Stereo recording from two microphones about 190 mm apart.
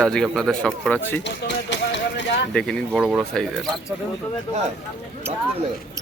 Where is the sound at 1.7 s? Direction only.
70° left (ahead or behind).